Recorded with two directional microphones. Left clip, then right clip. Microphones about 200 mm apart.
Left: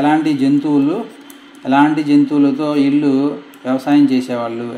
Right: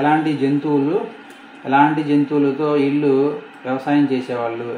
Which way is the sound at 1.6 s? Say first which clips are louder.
Left 2 dB; 35° left (ahead or behind).